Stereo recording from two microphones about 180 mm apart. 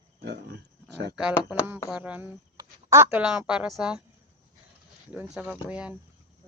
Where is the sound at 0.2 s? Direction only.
60° right (ahead or behind).